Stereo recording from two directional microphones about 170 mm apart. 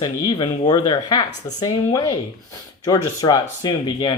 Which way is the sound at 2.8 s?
20° left (ahead or behind).